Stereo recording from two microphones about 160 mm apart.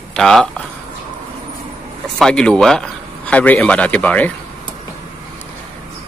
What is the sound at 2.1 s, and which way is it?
Speech, 5° left (ahead or behind).